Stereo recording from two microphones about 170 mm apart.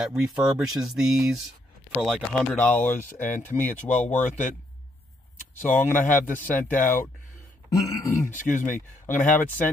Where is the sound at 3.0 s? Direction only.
50° left (ahead or behind).